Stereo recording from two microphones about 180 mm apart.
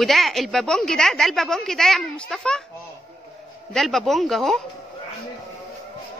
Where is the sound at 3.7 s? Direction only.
Centre (ahead or behind).